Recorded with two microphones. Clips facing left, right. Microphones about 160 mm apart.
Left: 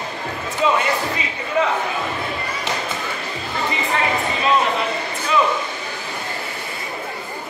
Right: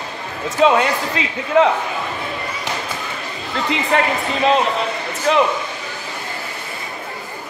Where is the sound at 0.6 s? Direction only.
90° right.